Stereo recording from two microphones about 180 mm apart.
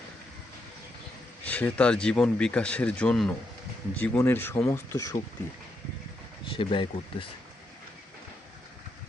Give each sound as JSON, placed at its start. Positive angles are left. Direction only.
{"t": 1.5, "sound": "speech", "side_deg": 10}
{"t": 6.5, "sound": "speech", "side_deg": 30}